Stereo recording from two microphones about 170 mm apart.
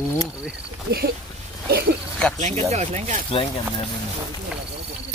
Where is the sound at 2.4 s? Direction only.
40° right (ahead or behind).